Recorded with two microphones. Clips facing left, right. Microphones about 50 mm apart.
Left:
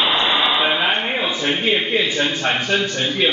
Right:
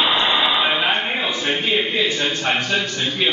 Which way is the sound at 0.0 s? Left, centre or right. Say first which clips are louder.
Even; centre.